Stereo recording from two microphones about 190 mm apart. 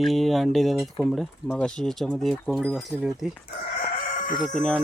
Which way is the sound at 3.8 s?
45° left (ahead or behind).